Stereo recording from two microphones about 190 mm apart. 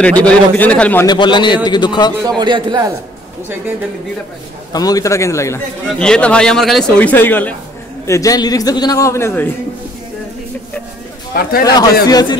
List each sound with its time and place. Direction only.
0.0 s a man's voice: 5° left (ahead or behind)
1.0 s a man's voice: 25° left (ahead or behind)
2.2 s a man's voice: 25° right (ahead or behind)
4.7 s a man's voice: 20° left (ahead or behind)
5.9 s a man's voice: 5° left (ahead or behind)
11.6 s a man's voice: 20° left (ahead or behind)